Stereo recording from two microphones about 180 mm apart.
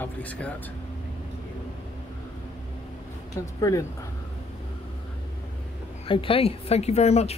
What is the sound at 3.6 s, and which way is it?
Speech, 20° left (ahead or behind).